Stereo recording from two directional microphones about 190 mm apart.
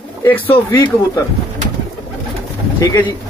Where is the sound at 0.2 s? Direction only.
15° left (ahead or behind).